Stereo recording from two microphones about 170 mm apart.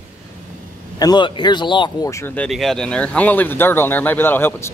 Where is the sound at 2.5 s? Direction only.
Centre (ahead or behind).